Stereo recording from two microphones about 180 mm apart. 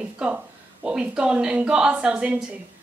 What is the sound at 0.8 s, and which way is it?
A woman's voice, 5° right (ahead or behind).